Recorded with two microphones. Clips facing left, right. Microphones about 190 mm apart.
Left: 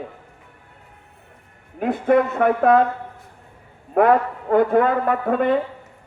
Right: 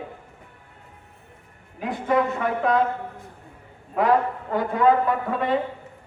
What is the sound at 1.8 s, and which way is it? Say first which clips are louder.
A woman's voice: left 5 dB; 55° left (ahead or behind).